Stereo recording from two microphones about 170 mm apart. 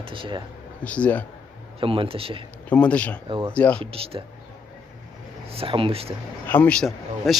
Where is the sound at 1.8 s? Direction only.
30° right (ahead or behind).